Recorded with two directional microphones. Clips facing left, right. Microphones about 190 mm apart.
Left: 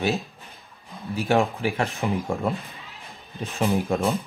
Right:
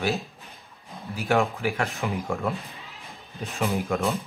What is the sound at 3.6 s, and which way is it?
Speech, 35° left (ahead or behind).